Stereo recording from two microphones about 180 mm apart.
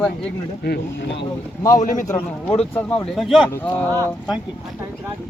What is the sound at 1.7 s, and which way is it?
Speech, 45° left (ahead or behind).